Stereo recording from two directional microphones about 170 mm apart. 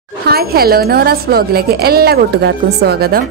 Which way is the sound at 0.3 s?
65° right (ahead or behind).